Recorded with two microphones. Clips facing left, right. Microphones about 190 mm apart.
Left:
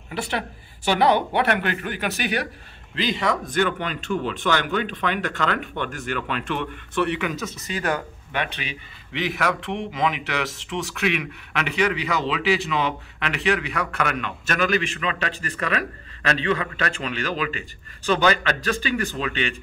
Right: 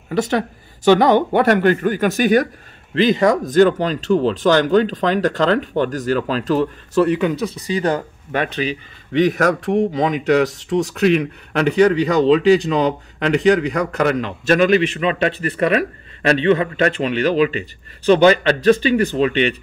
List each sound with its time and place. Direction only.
0.1 s speech: 40° right (ahead or behind)
3.5 s speech: 40° right (ahead or behind)